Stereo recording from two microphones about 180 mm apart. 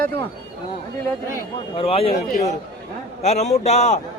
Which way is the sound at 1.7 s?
30° left (ahead or behind).